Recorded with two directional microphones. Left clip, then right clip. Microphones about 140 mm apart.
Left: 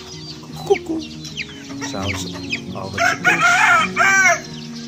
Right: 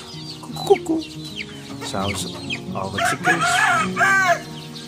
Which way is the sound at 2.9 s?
65° left (ahead or behind).